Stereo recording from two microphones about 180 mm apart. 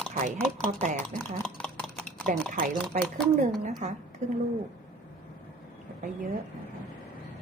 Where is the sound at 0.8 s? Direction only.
45° right (ahead or behind).